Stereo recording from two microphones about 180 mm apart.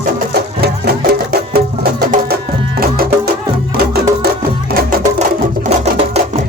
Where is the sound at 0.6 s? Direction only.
60° right (ahead or behind).